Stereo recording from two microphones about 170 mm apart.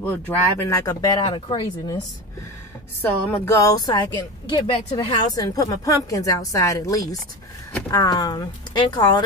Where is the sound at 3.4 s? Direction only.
20° left (ahead or behind).